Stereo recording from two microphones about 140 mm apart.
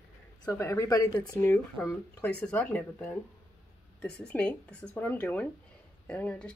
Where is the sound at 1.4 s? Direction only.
10° left (ahead or behind).